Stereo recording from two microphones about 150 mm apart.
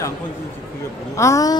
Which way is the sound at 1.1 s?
20° left (ahead or behind).